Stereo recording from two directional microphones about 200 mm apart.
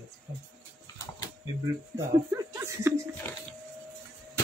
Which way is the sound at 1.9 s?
15° right (ahead or behind).